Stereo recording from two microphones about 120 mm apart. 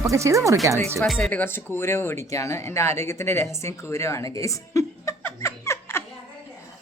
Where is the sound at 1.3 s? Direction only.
20° left (ahead or behind).